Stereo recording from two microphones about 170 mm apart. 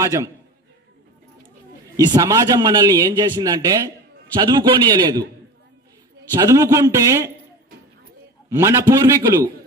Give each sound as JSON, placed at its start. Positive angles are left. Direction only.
{"t": 0.0, "sound": "a man's voice", "side_deg": -20}
{"t": 2.0, "sound": "a man's voice", "side_deg": -20}
{"t": 6.3, "sound": "a man's voice", "side_deg": -20}
{"t": 8.5, "sound": "a man's voice", "side_deg": -15}